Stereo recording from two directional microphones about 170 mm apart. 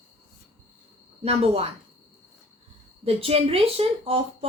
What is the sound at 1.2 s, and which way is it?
Speech, 35° right (ahead or behind).